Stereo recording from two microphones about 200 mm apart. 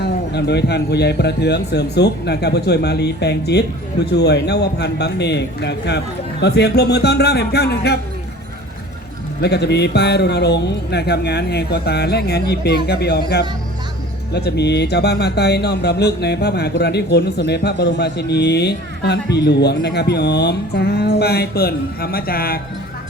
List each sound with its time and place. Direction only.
0.0 s speech: 55° left (ahead or behind)
9.4 s speech: 55° left (ahead or behind)